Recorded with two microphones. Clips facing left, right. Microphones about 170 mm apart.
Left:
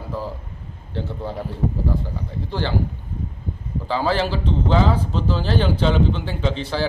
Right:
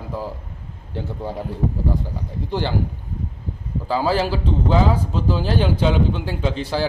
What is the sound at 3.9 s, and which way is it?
A man's voice, 10° right (ahead or behind).